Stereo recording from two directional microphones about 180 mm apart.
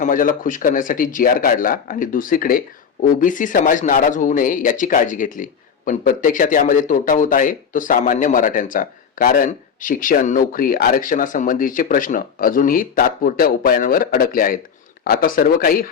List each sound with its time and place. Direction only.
0.0 s speech: 50° left (ahead or behind)